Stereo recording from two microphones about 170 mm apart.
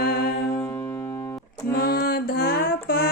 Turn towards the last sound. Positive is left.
turn(degrees=65)  # may be behind; listen again after turning